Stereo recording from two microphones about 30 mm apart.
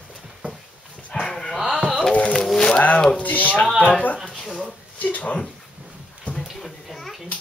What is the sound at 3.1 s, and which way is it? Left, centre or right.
Speech, left.